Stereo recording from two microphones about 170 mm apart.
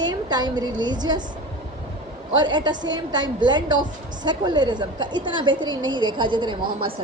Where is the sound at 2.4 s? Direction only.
25° right (ahead or behind).